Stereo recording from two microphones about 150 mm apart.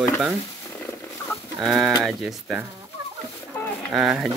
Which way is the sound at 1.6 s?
Centre (ahead or behind).